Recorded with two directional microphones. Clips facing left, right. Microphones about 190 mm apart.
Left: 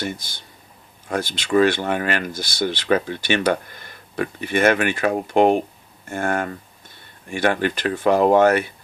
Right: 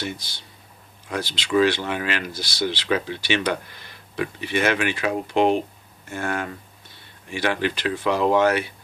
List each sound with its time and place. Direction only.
0.0 s speech: 50° left (ahead or behind)